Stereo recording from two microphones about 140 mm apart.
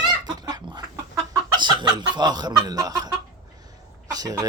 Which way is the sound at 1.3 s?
35° right (ahead or behind).